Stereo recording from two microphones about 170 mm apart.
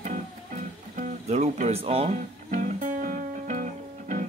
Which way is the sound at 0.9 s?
45° right (ahead or behind).